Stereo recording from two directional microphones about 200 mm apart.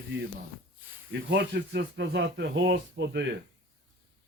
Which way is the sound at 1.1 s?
60° right (ahead or behind).